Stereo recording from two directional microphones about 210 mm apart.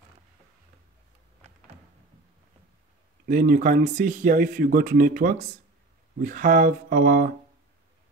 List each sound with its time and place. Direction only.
3.3 s speech: 40° right (ahead or behind)